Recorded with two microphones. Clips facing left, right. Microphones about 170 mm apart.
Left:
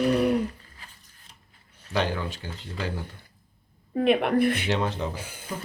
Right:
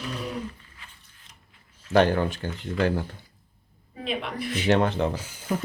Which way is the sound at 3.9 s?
60° left (ahead or behind).